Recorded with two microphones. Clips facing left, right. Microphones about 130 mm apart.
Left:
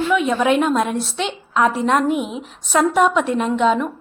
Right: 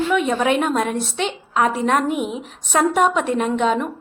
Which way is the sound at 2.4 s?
50° right (ahead or behind).